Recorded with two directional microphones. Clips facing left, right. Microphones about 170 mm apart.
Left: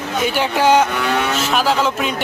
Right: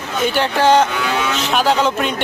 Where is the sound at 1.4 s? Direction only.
5° left (ahead or behind).